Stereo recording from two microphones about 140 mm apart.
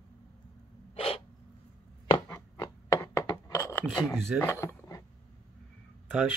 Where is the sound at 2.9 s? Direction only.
15° left (ahead or behind).